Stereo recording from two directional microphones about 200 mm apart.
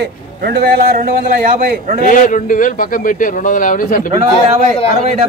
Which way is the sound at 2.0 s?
40° left (ahead or behind).